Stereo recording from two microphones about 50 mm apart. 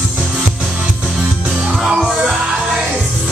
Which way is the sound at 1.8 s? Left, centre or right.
Centre.